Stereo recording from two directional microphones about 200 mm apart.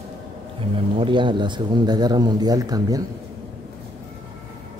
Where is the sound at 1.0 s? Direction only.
25° right (ahead or behind).